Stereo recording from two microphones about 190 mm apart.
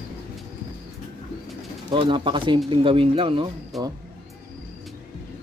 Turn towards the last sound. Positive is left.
turn(degrees=0)  # may be behind; listen again after turning